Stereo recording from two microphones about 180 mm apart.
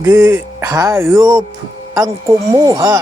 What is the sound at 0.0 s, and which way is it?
Speech, 15° right (ahead or behind).